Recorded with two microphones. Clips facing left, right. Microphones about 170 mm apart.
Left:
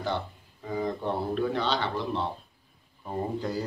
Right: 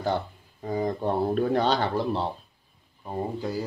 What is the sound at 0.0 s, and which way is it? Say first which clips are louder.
Speech: right 4 dB; 40° right (ahead or behind).